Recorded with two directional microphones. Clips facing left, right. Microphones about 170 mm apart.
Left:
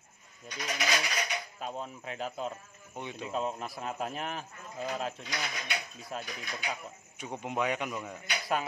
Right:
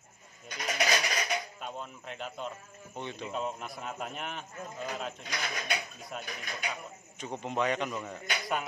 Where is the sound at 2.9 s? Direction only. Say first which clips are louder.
Left 1 dB; 10° left (ahead or behind).